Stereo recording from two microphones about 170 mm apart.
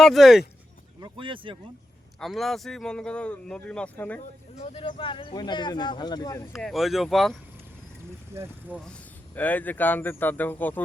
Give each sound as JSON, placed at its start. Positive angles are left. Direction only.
{"t": 0.0, "sound": "speech", "side_deg": 0}
{"t": 1.0, "sound": "speech", "side_deg": -30}
{"t": 2.2, "sound": "speech", "side_deg": 0}
{"t": 4.6, "sound": "speech", "side_deg": 35}
{"t": 6.5, "sound": "speech", "side_deg": 0}
{"t": 8.3, "sound": "speech", "side_deg": -10}
{"t": 9.3, "sound": "speech", "side_deg": 10}